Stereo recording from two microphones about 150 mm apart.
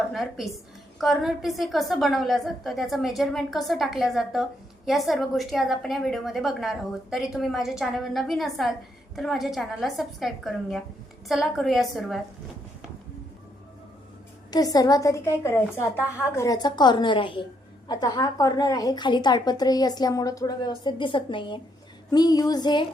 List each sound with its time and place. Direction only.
0.1 s a woman's voice: centre (ahead or behind)
14.5 s a woman's voice: 25° left (ahead or behind)